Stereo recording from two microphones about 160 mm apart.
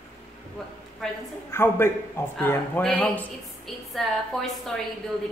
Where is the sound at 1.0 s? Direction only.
Centre (ahead or behind).